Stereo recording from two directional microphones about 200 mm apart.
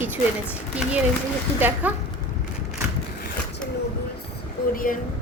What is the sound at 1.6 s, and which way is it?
Speech, 10° right (ahead or behind).